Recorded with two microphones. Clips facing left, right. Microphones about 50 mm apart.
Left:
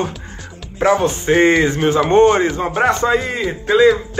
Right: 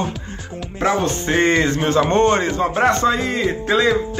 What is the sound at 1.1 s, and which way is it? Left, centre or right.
Music, centre.